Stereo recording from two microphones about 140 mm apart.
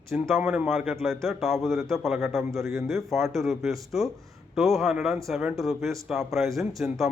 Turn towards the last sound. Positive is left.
turn(degrees=0)  # may be behind; listen again after turning